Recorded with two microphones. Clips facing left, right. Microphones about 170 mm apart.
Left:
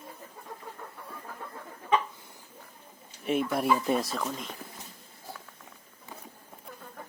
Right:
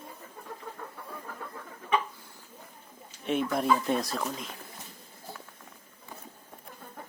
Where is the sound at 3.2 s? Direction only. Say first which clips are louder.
Even; 5° left (ahead or behind).